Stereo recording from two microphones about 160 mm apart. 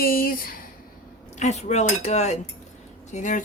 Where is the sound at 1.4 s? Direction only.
45° left (ahead or behind).